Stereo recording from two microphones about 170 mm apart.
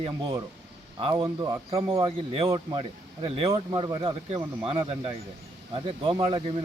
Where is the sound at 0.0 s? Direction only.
25° right (ahead or behind).